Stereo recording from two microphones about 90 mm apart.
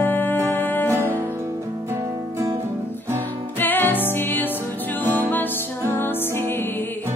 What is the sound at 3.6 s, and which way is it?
Music, 20° left (ahead or behind).